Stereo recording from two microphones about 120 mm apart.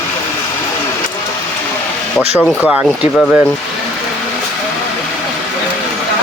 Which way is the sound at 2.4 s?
10° left (ahead or behind).